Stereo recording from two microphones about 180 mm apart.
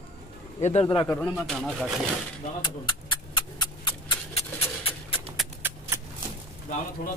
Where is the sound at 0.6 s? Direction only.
40° left (ahead or behind).